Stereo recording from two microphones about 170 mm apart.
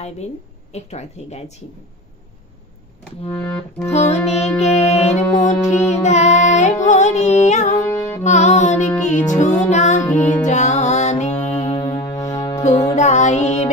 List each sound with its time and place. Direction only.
0.7 s music: 40° left (ahead or behind)
3.3 s accordion: 10° left (ahead or behind)
3.9 s music: 40° left (ahead or behind)
7.7 s music: 15° left (ahead or behind)
8.2 s music: 45° left (ahead or behind)
11.6 s music: 30° left (ahead or behind)
12.9 s music: 45° left (ahead or behind)